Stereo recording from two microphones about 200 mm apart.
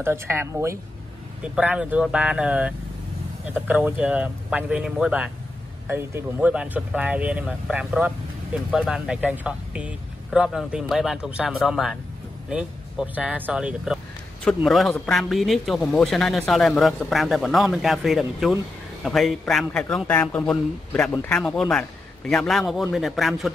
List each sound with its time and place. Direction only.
0.0 s speech: 10° right (ahead or behind)